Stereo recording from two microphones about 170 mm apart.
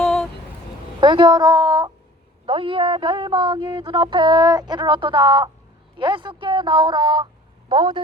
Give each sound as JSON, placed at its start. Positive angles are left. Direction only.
{"t": 0.0, "sound": "vehicle", "side_deg": 5}
{"t": 0.9, "sound": "a woman's voice", "side_deg": -30}
{"t": 2.5, "sound": "a sound", "side_deg": -30}